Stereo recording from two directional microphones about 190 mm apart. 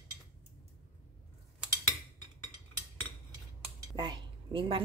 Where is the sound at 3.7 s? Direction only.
20° right (ahead or behind).